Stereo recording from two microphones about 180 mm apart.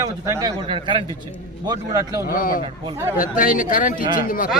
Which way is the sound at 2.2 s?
50° left (ahead or behind).